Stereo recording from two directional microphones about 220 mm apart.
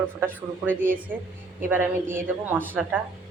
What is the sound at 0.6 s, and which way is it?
A woman's voice, 10° right (ahead or behind).